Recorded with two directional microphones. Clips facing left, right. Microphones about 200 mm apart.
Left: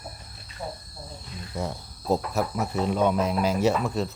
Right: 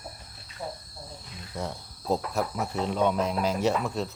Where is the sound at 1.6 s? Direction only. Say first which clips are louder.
Left 2 dB; 10° left (ahead or behind).